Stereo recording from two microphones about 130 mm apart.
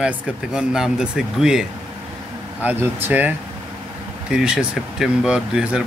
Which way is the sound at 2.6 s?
15° right (ahead or behind).